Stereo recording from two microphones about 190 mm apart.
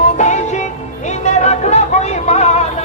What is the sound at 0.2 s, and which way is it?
Music, 40° left (ahead or behind).